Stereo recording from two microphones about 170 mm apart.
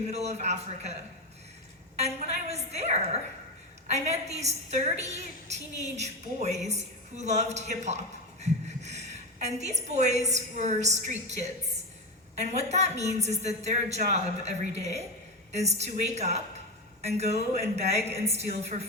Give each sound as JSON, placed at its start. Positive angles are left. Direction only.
{"t": 0.1, "sound": "a woman's voice", "side_deg": -40}
{"t": 2.0, "sound": "a sound", "side_deg": -40}
{"t": 3.9, "sound": "a woman's voice", "side_deg": -40}